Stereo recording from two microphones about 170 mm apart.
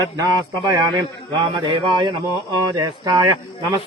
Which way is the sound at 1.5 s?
25° right (ahead or behind).